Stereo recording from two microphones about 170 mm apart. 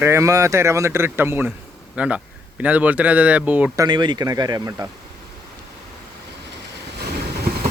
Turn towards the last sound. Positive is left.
turn(degrees=-70)  # may be behind; listen again after turning